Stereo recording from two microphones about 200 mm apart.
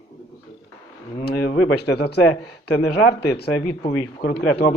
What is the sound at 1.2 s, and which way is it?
Speech, 50° left (ahead or behind).